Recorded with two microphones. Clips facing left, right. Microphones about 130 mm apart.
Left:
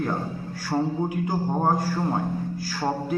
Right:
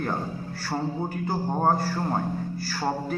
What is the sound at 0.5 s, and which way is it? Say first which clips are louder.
A man's voice: left 4 dB; 15° left (ahead or behind).